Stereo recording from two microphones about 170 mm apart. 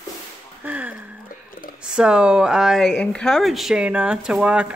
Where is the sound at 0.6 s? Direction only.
10° right (ahead or behind).